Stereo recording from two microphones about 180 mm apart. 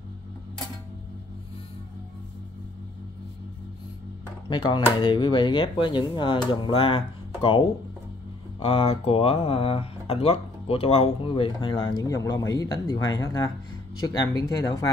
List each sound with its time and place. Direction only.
4.5 s speech: 25° left (ahead or behind)
8.5 s speech: 30° left (ahead or behind)